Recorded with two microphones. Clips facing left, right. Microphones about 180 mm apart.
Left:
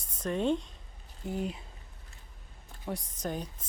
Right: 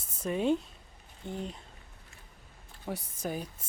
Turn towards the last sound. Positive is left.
turn(degrees=-10)  # may be behind; listen again after turning